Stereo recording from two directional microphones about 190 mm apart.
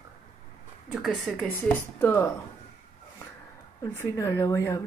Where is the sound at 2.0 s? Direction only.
15° left (ahead or behind).